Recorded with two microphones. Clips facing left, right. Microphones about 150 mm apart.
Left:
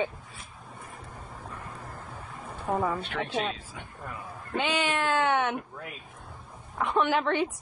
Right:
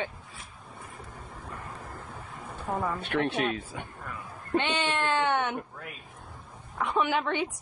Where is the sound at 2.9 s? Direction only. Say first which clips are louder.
Right 3 dB; 65° right (ahead or behind).